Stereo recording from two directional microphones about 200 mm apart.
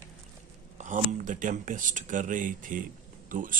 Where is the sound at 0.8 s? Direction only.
40° right (ahead or behind).